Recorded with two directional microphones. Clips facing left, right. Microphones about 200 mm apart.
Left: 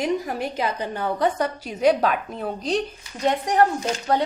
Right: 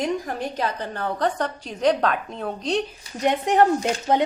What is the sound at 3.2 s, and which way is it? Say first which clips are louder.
Speech: right 1 dB; 20° right (ahead or behind).